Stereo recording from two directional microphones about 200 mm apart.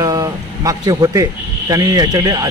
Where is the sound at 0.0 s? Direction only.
15° right (ahead or behind).